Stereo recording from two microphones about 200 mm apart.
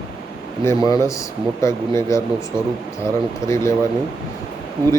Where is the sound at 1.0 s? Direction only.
15° left (ahead or behind).